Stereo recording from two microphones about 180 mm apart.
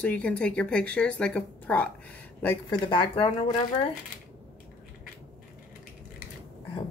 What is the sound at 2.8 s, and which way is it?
Speech, 30° left (ahead or behind).